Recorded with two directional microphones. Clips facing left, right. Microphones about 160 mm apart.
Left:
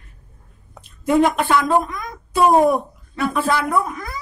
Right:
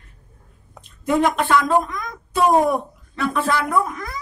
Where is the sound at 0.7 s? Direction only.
5° left (ahead or behind).